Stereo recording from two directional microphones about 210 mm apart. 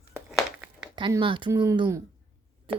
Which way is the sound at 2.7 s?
25° right (ahead or behind).